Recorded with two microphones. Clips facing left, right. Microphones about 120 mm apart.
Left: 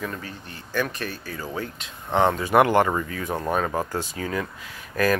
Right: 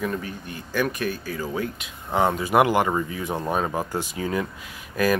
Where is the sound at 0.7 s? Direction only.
10° right (ahead or behind).